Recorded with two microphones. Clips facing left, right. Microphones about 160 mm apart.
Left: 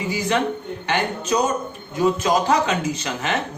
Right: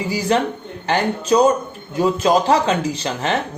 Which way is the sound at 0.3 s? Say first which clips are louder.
Right 4 dB; 35° right (ahead or behind).